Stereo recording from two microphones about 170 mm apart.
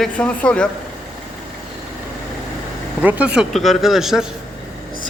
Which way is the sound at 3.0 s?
10° right (ahead or behind).